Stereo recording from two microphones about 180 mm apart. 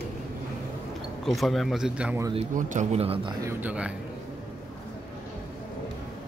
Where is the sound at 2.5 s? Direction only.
45° right (ahead or behind).